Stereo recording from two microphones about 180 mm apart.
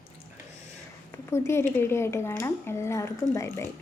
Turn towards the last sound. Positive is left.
turn(degrees=15)  # may be behind; listen again after turning